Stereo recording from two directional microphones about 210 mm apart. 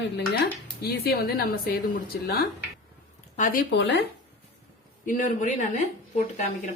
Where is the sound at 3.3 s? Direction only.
40° left (ahead or behind).